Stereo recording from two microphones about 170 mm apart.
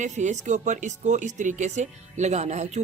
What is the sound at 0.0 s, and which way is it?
Speech, 45° right (ahead or behind).